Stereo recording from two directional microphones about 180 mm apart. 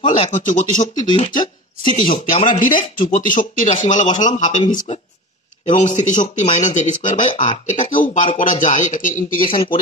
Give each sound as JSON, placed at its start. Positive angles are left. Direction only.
{"t": 0.3, "sound": "speech", "side_deg": 45}
{"t": 1.0, "sound": "speech", "side_deg": 30}
{"t": 2.2, "sound": "speech", "side_deg": 45}
{"t": 9.5, "sound": "speech", "side_deg": 30}